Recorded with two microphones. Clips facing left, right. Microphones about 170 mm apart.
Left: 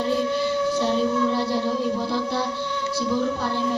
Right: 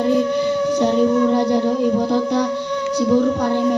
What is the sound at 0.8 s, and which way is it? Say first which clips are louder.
Music: right 8 dB; 60° right (ahead or behind).